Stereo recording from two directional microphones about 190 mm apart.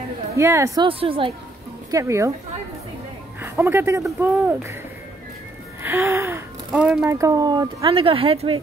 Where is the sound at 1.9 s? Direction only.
15° right (ahead or behind).